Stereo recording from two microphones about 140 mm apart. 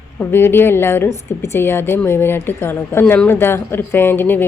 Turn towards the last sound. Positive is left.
turn(degrees=15)  # may be behind; listen again after turning